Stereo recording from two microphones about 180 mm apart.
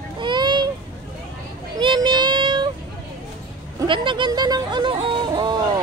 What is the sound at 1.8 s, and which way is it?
Child singing, 25° right (ahead or behind).